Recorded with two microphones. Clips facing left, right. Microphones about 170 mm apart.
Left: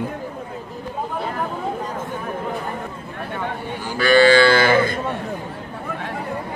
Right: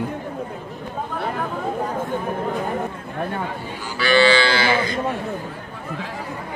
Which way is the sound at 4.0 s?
50° left (ahead or behind).